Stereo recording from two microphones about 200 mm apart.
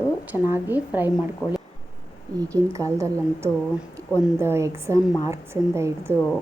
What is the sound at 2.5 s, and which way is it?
A woman's voice, 15° right (ahead or behind).